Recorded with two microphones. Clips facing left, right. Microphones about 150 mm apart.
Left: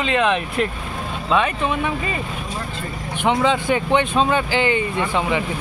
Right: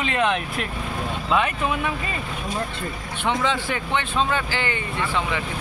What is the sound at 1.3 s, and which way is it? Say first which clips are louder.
Speech: left 3 dB; 5° right (ahead or behind).